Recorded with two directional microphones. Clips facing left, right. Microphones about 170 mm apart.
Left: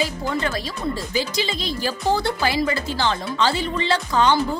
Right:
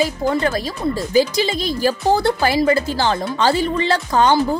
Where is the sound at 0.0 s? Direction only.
40° right (ahead or behind).